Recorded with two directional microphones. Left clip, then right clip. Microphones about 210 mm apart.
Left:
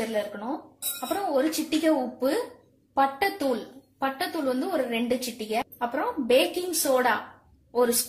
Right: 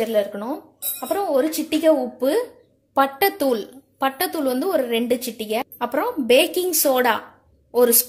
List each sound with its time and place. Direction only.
1.0 s a woman's voice: 45° right (ahead or behind)